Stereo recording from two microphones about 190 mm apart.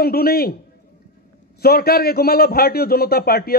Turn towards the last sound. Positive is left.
turn(degrees=55)  # may be behind; listen again after turning